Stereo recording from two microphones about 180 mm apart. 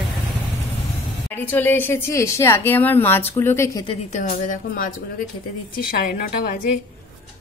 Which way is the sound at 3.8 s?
40° left (ahead or behind).